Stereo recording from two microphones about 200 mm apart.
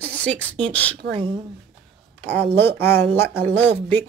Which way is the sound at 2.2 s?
30° right (ahead or behind).